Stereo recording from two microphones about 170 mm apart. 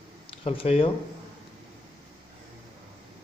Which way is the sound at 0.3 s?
35° left (ahead or behind).